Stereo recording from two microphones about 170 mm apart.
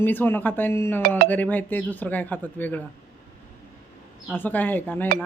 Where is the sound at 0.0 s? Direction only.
10° left (ahead or behind).